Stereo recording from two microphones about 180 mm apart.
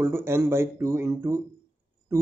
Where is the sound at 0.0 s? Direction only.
15° right (ahead or behind).